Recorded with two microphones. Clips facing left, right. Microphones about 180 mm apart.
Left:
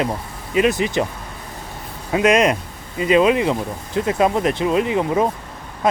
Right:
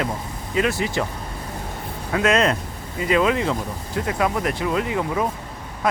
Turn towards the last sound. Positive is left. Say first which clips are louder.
# left 5 dB
turn(degrees=20)  # may be behind; listen again after turning